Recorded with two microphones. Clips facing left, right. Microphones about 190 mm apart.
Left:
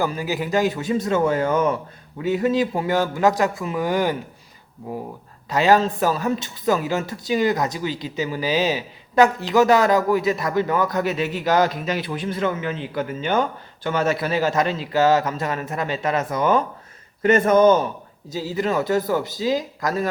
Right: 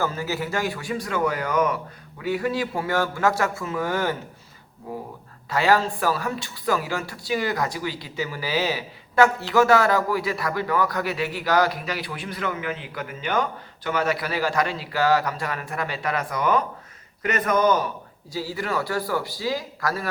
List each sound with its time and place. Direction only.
0.0 s a man's voice: 15° left (ahead or behind)